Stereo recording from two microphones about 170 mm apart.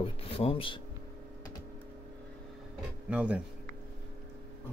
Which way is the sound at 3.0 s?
5° right (ahead or behind).